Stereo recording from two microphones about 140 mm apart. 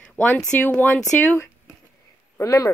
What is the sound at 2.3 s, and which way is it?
Speech, 25° left (ahead or behind).